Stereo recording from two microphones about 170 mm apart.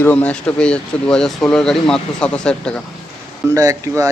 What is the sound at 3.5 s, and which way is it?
Speech, 20° right (ahead or behind).